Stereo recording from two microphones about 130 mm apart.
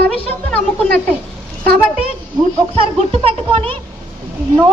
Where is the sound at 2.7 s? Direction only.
45° right (ahead or behind).